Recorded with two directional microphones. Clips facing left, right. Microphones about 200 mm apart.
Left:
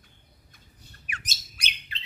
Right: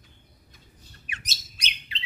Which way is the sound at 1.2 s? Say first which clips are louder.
Even; 50° left (ahead or behind).